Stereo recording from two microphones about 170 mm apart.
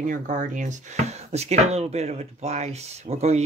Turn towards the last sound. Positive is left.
turn(degrees=-40)  # may be behind; listen again after turning